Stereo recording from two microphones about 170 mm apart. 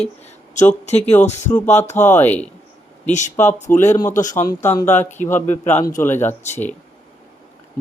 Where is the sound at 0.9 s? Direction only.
40° left (ahead or behind).